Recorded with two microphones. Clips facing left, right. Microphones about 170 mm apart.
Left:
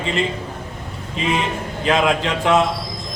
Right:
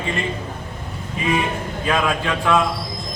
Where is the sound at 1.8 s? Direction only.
20° left (ahead or behind).